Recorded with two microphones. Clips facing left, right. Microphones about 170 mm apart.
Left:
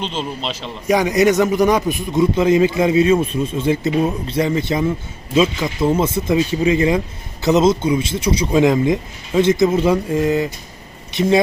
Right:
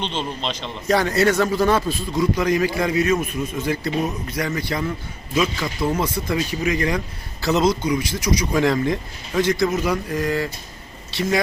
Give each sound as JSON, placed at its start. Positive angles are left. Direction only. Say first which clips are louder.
{"t": 0.0, "sound": "a man's voice", "louder": "left 2 dB", "side_deg": 5}
{"t": 8.6, "sound": "a man's voice", "louder": "left 5 dB", "side_deg": 15}